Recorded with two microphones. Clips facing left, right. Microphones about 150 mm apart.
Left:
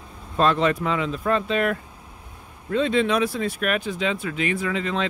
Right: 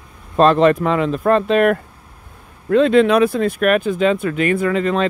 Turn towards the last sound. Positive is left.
turn(degrees=-50)  # may be behind; listen again after turning